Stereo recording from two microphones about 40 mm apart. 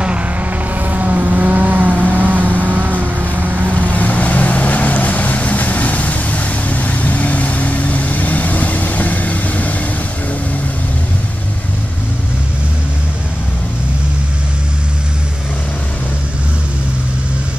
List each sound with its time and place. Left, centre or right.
0.7 s vehicle: right
3.9 s vehicle: left